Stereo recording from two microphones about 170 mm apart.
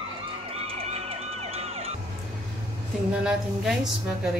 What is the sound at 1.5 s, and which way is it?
Emergency vehicle, 35° right (ahead or behind).